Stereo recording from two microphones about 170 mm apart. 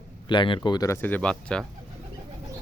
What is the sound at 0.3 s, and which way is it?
Speech, 30° left (ahead or behind).